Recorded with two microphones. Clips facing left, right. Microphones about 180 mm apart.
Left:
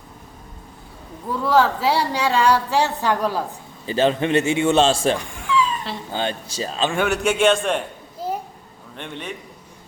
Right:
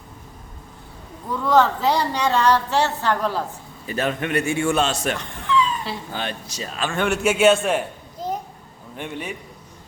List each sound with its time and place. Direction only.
1.5 s a woman's voice: 5° left (ahead or behind)
3.8 s a man's voice: 30° left (ahead or behind)
5.1 s cat: 10° left (ahead or behind)
6.1 s a man's voice: 30° left (ahead or behind)
6.9 s a man's voice: centre (ahead or behind)
8.2 s a sound: 5° left (ahead or behind)
9.0 s a man's voice: 10° right (ahead or behind)